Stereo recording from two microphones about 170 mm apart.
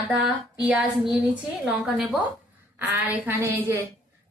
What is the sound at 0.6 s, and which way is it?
A woman's voice, 10° right (ahead or behind).